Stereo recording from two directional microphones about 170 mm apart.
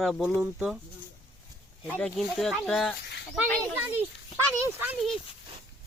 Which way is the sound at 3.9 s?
15° right (ahead or behind).